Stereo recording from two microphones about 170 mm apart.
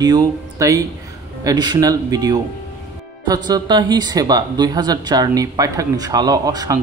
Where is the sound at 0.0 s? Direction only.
20° right (ahead or behind).